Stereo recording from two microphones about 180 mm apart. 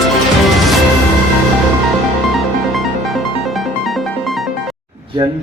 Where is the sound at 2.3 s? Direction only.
Centre (ahead or behind).